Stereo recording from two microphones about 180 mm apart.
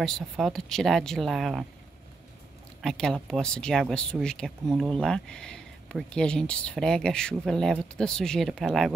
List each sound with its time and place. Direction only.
0.0 s speech: centre (ahead or behind)
2.8 s speech: centre (ahead or behind)